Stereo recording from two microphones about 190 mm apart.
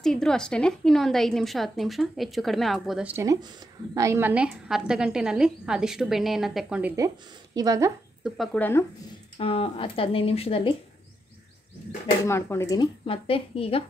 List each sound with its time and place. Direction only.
0.0 s a woman's voice: 5° left (ahead or behind)
7.5 s speech: 20° right (ahead or behind)
8.2 s speech: 5° left (ahead or behind)
9.4 s speech: 30° left (ahead or behind)
12.3 s speech: 15° left (ahead or behind)
13.0 s speech: 30° left (ahead or behind)